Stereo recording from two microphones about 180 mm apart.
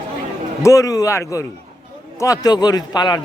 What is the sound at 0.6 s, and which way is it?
A man's voice, 20° left (ahead or behind).